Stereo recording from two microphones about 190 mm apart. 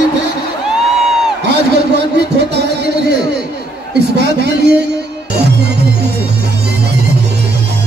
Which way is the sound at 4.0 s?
60° right (ahead or behind).